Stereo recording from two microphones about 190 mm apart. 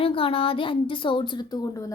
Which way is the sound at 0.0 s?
30° left (ahead or behind).